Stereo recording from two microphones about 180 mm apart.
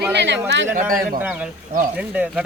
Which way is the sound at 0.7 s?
50° right (ahead or behind).